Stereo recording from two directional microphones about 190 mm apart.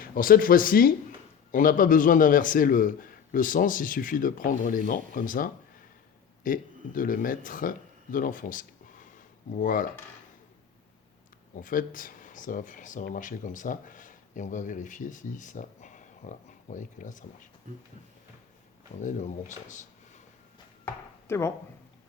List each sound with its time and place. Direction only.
0.0 s a man's voice: 50° left (ahead or behind)
11.5 s speech: 45° left (ahead or behind)
19.0 s speech: 40° left (ahead or behind)
20.8 s chopping: 15° left (ahead or behind)